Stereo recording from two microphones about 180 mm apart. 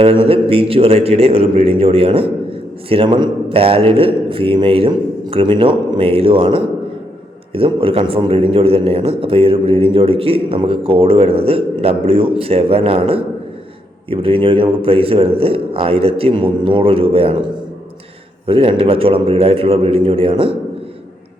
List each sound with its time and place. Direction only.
0.0 s a man's voice: 30° right (ahead or behind)
18.4 s a man's voice: 30° right (ahead or behind)